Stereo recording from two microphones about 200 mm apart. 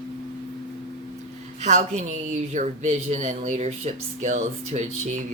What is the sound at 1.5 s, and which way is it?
A man's voice, 35° right (ahead or behind).